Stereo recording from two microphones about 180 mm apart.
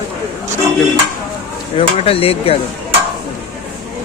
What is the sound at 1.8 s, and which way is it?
Speech, 30° left (ahead or behind).